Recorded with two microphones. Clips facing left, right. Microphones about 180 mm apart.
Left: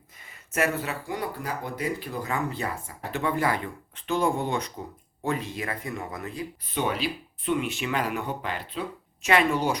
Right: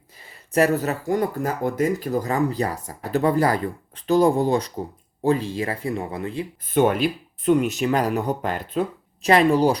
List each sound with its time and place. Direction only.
0.3 s speech: 35° right (ahead or behind)
6.7 s speech: 50° right (ahead or behind); by 9.7 s 35° right (ahead or behind)